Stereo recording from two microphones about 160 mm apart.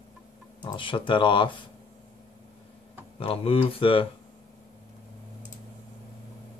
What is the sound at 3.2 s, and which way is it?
Speech, 35° left (ahead or behind).